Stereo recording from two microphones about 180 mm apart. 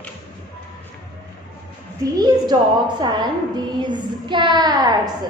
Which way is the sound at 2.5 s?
20° right (ahead or behind).